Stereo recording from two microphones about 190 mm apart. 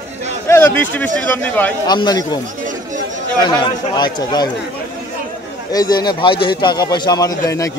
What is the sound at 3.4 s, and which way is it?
A man's voice, 25° left (ahead or behind).